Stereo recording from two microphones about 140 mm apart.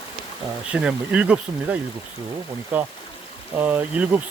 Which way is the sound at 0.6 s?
10° right (ahead or behind).